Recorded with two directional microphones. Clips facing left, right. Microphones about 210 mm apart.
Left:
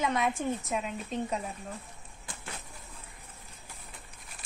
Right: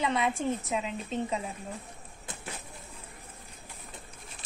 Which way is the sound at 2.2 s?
20° right (ahead or behind).